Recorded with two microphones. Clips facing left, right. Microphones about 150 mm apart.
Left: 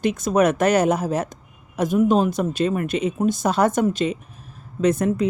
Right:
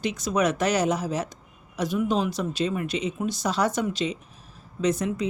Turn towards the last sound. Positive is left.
turn(degrees=50)  # may be behind; listen again after turning